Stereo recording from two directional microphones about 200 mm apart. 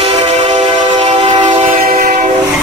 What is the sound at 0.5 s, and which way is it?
Train, 25° right (ahead or behind).